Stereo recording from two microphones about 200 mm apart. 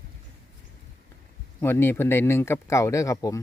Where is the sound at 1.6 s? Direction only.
10° left (ahead or behind).